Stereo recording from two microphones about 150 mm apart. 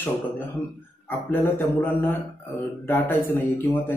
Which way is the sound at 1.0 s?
15° left (ahead or behind).